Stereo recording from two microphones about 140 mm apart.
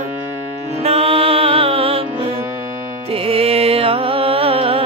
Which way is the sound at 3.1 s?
45° right (ahead or behind).